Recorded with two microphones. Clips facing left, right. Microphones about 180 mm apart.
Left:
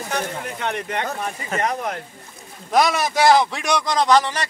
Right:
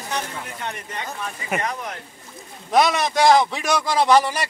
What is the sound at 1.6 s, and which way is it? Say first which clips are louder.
Speech: left 5 dB; 50° left (ahead or behind).